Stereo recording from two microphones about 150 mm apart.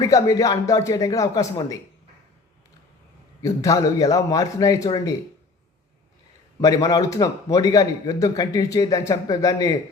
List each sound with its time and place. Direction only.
0.0 s a man's voice: 20° left (ahead or behind)
3.4 s a man's voice: 20° left (ahead or behind)
6.6 s a man's voice: 25° left (ahead or behind)